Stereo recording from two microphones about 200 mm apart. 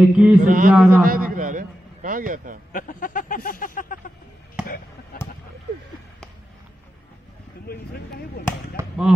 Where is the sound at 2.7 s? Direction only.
40° left (ahead or behind).